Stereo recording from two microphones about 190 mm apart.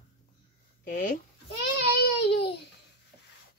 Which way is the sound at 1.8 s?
60° left (ahead or behind).